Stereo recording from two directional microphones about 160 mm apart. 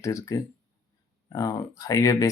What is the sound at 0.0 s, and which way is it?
Speech, 20° left (ahead or behind).